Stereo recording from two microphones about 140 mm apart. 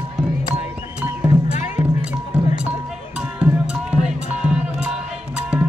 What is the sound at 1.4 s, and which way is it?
Music, 55° left (ahead or behind).